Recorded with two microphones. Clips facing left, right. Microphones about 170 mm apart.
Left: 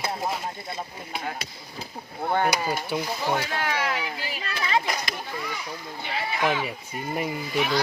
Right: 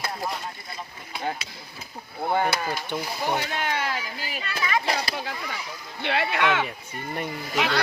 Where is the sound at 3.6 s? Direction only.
25° right (ahead or behind).